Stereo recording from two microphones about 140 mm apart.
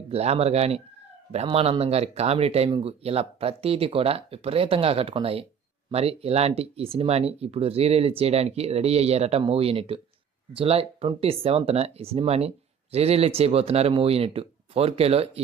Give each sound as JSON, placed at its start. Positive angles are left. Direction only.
{"t": 0.1, "sound": "speech", "side_deg": -45}